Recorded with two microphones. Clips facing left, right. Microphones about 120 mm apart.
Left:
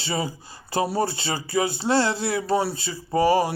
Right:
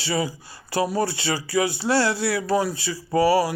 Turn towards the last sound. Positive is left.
turn(degrees=25)  # may be behind; listen again after turning